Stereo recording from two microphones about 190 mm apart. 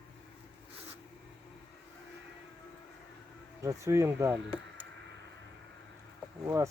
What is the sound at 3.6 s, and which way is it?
Speech, 15° right (ahead or behind).